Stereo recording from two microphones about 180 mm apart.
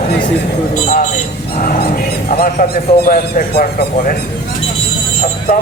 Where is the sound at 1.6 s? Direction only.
50° left (ahead or behind).